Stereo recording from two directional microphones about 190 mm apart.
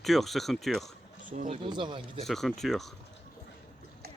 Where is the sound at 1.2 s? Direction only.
45° right (ahead or behind).